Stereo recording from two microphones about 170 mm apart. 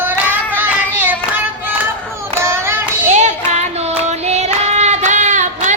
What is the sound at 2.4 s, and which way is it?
Music, 15° right (ahead or behind).